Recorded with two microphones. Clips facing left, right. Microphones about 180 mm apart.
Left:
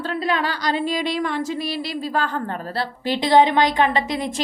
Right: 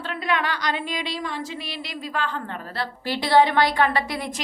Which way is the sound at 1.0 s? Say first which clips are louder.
Left 7 dB; 55° left (ahead or behind).